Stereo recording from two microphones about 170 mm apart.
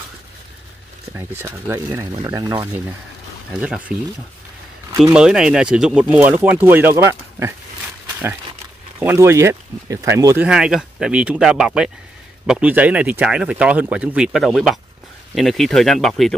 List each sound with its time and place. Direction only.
1.1 s speech: 15° right (ahead or behind)
3.5 s speech: 5° right (ahead or behind)
5.1 s speech: 5° right (ahead or behind)
9.0 s speech: 15° right (ahead or behind); by 16.3 s centre (ahead or behind)